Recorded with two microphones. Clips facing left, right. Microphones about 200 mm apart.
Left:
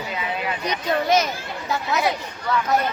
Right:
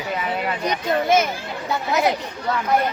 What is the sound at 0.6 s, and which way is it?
Speech, 50° right (ahead or behind).